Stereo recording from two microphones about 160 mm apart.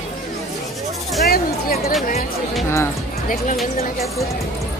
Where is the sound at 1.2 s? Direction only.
75° left (ahead or behind).